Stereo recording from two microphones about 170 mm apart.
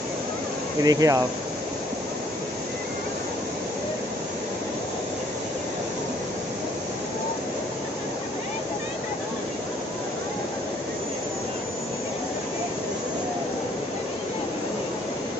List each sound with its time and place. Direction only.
0.8 s speech: 20° right (ahead or behind)